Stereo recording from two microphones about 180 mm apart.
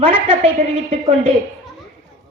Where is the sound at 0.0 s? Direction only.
30° right (ahead or behind).